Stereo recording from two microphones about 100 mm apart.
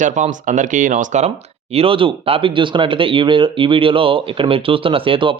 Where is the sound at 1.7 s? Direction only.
65° right (ahead or behind).